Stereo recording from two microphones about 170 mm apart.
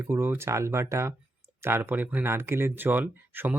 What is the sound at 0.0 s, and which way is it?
Speech, 15° right (ahead or behind).